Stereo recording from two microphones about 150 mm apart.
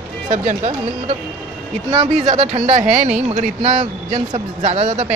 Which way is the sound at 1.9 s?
40° right (ahead or behind).